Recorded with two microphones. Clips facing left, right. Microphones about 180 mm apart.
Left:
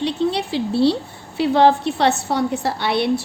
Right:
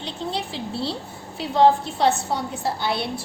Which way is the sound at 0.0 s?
70° left (ahead or behind).